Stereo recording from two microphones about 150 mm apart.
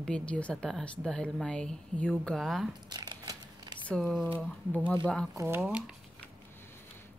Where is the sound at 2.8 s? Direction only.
25° right (ahead or behind).